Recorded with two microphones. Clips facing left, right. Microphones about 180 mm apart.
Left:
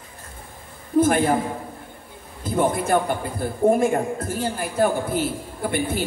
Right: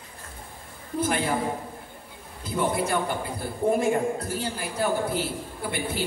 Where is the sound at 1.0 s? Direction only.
50° left (ahead or behind).